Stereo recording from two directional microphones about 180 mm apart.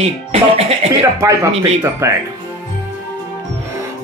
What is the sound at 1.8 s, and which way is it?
Speech, 15° right (ahead or behind).